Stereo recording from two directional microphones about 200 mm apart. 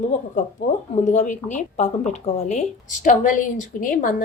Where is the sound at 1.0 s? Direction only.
35° left (ahead or behind).